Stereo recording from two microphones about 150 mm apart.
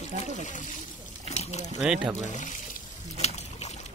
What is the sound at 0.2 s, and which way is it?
Speech, 55° left (ahead or behind).